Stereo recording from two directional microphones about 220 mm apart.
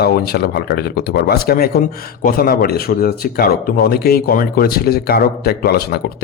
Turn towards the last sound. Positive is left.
turn(degrees=45)  # may be behind; listen again after turning